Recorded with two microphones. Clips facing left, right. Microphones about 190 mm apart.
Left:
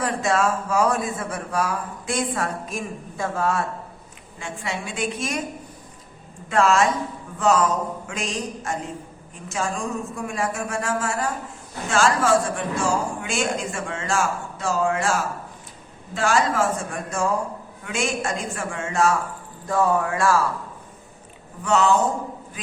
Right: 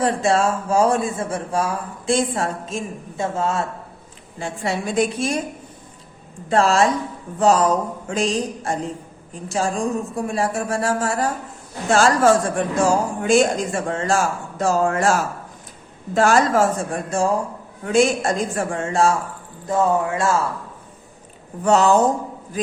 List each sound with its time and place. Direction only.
0.0 s speech: 30° right (ahead or behind)
4.4 s a woman's voice: 35° right (ahead or behind)
6.5 s a woman's voice: 35° right (ahead or behind)
19.6 s speech: 20° right (ahead or behind)
21.6 s a woman's voice: 40° right (ahead or behind)